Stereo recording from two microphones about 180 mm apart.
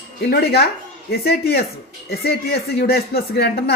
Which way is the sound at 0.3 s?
65° left (ahead or behind).